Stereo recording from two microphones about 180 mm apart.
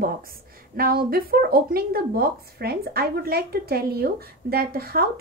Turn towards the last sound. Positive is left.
turn(degrees=-55)  # may be behind; listen again after turning